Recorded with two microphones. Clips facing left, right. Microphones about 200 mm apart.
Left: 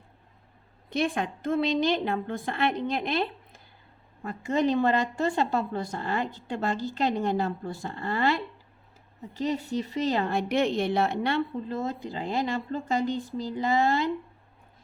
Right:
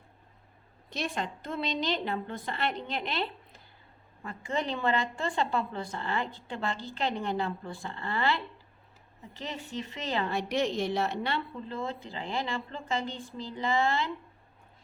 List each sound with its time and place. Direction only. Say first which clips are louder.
0.9 s a woman's voice: left 7 dB; 55° left (ahead or behind)